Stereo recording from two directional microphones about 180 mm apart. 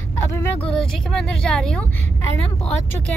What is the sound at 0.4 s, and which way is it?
Speech, 10° left (ahead or behind).